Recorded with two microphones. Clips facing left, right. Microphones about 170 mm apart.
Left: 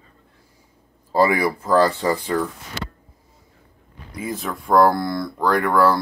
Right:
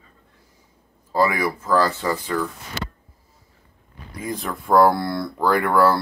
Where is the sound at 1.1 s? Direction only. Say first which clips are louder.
Left 3 dB; 35° left (ahead or behind).